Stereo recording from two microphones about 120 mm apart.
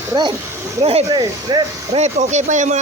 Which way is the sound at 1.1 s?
40° right (ahead or behind).